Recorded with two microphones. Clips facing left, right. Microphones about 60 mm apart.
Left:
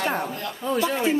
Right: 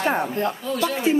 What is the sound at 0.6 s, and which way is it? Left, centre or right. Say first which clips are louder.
Speech: even; left.